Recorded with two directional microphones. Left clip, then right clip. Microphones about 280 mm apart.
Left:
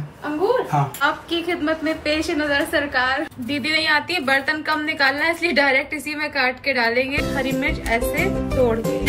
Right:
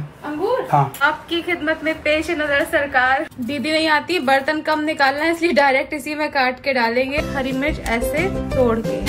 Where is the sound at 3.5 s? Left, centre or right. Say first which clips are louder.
Right 1 dB; right.